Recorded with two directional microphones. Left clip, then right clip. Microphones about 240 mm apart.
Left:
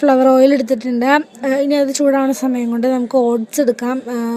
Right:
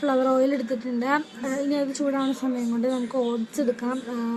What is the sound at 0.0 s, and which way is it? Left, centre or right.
A woman's voice, left.